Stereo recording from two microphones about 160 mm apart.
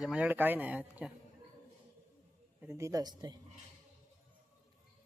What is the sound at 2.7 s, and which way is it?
Speech, 20° right (ahead or behind).